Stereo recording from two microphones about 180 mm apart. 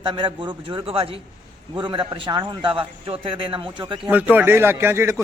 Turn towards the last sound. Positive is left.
turn(degrees=-15)  # may be behind; listen again after turning